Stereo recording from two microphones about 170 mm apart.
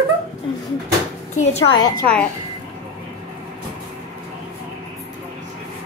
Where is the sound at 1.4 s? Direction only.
40° left (ahead or behind).